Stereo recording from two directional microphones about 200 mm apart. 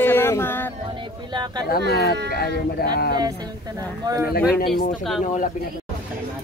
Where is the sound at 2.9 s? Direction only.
50° left (ahead or behind).